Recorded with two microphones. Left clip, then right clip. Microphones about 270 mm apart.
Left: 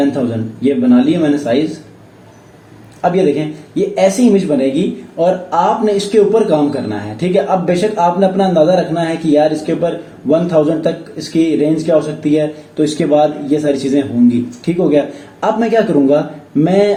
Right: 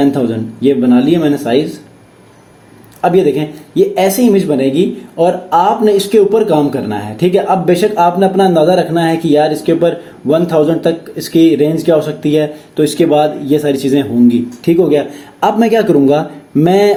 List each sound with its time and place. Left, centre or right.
0.6 s speech: right
3.0 s speech: right